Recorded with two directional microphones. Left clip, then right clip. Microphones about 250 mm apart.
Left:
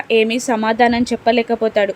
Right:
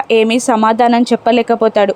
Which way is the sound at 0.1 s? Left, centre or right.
Centre.